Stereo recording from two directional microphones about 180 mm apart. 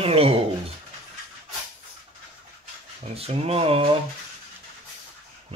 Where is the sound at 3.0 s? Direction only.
35° right (ahead or behind).